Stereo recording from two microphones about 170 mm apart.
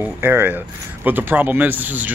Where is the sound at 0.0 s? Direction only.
10° right (ahead or behind).